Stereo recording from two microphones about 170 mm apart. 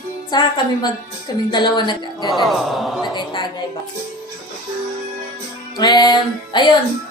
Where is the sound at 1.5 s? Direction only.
25° left (ahead or behind).